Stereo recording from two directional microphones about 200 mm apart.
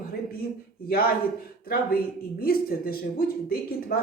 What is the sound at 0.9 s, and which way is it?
Speech, 50° left (ahead or behind).